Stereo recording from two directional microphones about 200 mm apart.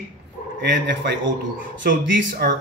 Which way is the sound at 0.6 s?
60° right (ahead or behind).